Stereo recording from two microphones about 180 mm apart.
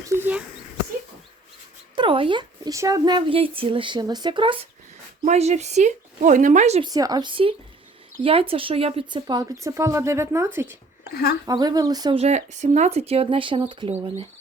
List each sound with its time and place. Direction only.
0.1 s a sound: 10° right (ahead or behind)
2.0 s speech: 30° right (ahead or behind)
5.2 s speech: 40° right (ahead or behind)
6.8 s speech: 20° right (ahead or behind)
11.1 s a woman's voice: 60° left (ahead or behind)
11.4 s speech: 20° right (ahead or behind)
12.1 s speech: 35° right (ahead or behind)